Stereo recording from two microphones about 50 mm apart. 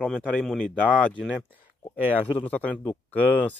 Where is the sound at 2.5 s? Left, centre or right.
Left.